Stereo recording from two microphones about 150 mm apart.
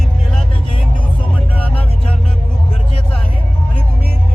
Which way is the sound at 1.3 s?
10° left (ahead or behind).